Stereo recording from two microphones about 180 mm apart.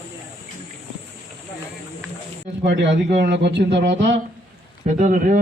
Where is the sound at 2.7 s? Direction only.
80° right.